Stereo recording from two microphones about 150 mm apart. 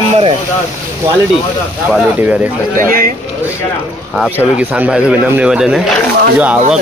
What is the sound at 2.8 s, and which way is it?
Speech, 75° right (ahead or behind).